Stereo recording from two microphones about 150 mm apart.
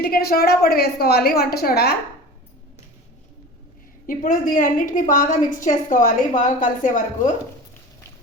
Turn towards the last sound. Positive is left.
turn(degrees=60)  # may be behind; listen again after turning